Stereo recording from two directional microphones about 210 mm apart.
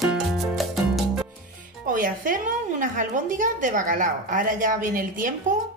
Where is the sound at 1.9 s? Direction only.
40° right (ahead or behind).